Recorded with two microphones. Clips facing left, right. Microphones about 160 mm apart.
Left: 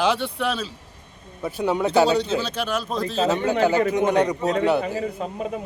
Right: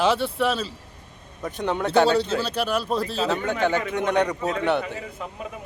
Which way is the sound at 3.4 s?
35° left (ahead or behind).